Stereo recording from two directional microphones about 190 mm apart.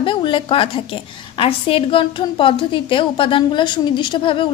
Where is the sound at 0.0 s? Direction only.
25° left (ahead or behind).